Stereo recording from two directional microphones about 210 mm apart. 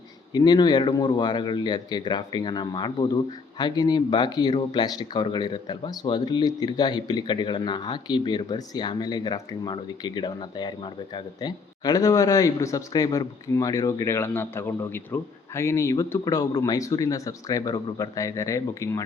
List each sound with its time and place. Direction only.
0.3 s speech: 20° left (ahead or behind)